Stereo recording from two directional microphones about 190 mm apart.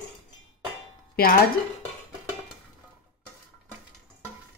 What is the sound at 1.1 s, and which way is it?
Speech, 50° left (ahead or behind).